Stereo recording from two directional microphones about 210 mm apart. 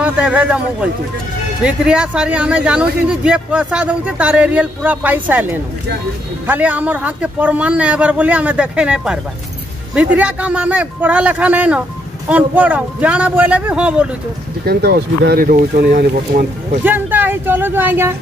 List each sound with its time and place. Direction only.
0.0 s speech: 5° right (ahead or behind)
14.6 s speech: 50° right (ahead or behind)
16.8 s speech: 10° right (ahead or behind)